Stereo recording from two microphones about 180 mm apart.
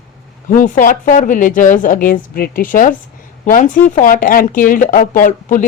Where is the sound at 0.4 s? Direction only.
45° left (ahead or behind).